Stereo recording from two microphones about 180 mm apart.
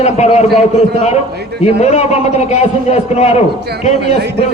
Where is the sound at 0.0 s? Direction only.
35° left (ahead or behind).